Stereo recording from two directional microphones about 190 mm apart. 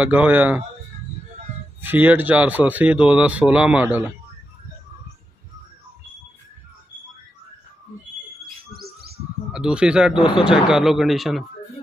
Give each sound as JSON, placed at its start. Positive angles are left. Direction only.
{"t": 0.0, "sound": "speech", "side_deg": -10}
{"t": 1.8, "sound": "speech", "side_deg": -10}
{"t": 8.7, "sound": "bird", "side_deg": -55}
{"t": 9.5, "sound": "speech", "side_deg": -5}